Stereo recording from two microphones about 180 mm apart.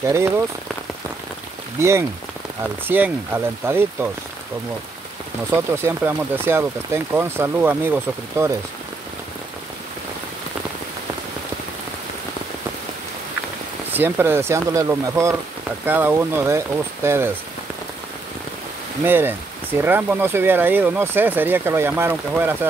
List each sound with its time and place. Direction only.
0.0 s speech: 15° right (ahead or behind)
1.8 s speech: 15° right (ahead or behind)
5.5 s speech: 15° right (ahead or behind)
13.9 s speech: 10° right (ahead or behind)
19.0 s speech: 10° right (ahead or behind)